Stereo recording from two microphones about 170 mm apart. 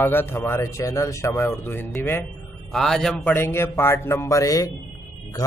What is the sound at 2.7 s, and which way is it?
A man's voice, centre (ahead or behind).